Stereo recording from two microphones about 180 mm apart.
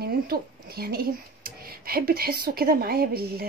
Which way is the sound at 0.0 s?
60° right (ahead or behind).